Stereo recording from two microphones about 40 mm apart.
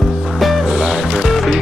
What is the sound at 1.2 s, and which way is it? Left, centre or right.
Music, centre.